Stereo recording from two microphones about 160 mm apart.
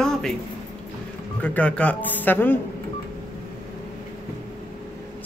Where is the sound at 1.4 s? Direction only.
10° left (ahead or behind).